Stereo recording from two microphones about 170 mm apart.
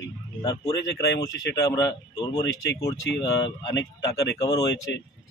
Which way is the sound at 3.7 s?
90° left.